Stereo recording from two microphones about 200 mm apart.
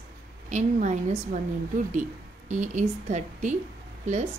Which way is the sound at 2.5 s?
35° right (ahead or behind).